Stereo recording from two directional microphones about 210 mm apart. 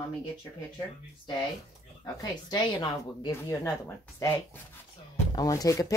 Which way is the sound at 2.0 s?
20° left (ahead or behind).